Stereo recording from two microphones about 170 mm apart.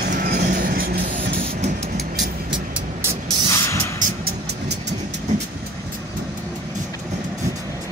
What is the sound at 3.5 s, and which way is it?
Vehicle, 15° left (ahead or behind).